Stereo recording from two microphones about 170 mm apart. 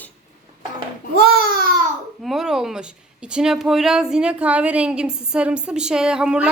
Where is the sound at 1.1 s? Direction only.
65° right (ahead or behind).